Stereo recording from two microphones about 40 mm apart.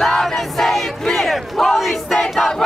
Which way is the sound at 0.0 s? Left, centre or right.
Centre.